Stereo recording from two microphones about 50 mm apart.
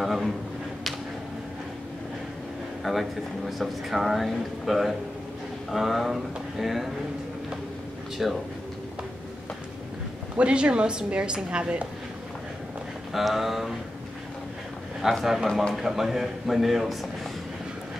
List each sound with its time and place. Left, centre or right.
0.0 s speech: centre
2.8 s speech: centre
8.2 s speech: centre
10.3 s a woman's voice: right
13.1 s speech: centre
15.0 s speech: centre